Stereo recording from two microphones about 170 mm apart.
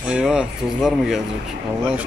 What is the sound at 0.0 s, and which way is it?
Speech, 5° right (ahead or behind).